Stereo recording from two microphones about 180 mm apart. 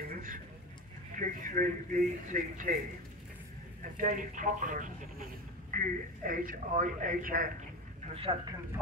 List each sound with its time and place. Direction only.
0.1 s a sound: 50° right (ahead or behind)
1.1 s speech: 45° right (ahead or behind)
3.8 s speech: 45° right (ahead or behind)
8.1 s speech: 30° right (ahead or behind)